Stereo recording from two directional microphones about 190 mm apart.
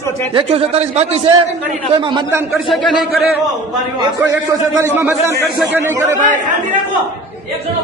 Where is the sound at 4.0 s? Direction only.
15° right (ahead or behind).